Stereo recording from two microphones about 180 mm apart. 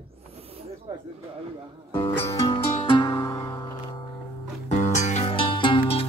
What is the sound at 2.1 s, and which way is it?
Music, 15° left (ahead or behind).